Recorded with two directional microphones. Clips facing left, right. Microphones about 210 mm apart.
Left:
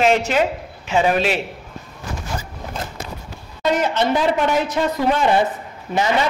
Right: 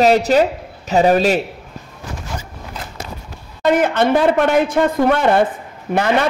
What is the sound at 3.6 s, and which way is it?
A man's voice, 55° right (ahead or behind).